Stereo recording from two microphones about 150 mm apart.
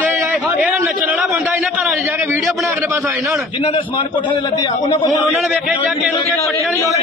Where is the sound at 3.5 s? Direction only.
35° left (ahead or behind).